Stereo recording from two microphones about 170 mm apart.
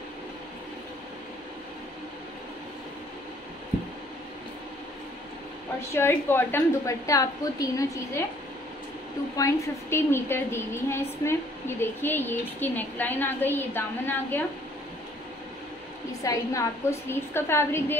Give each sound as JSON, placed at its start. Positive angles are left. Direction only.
{"t": 5.9, "sound": "a woman's voice", "side_deg": 15}
{"t": 9.4, "sound": "a woman's voice", "side_deg": 15}
{"t": 16.1, "sound": "a woman's voice", "side_deg": 20}